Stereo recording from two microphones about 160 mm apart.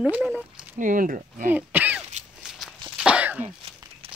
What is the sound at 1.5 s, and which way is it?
Throat clearing, 10° right (ahead or behind).